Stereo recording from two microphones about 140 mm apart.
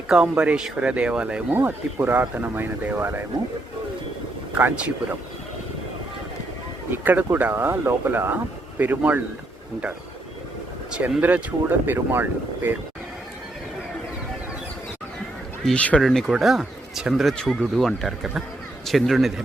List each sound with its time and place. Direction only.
0.1 s speech: 5° right (ahead or behind)
4.5 s speech: 10° right (ahead or behind)
6.9 s speech: 15° right (ahead or behind)
10.9 s speech: 10° right (ahead or behind)
15.6 s speech: 10° left (ahead or behind)